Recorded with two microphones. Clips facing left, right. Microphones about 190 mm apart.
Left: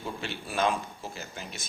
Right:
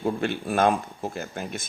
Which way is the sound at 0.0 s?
55° right (ahead or behind).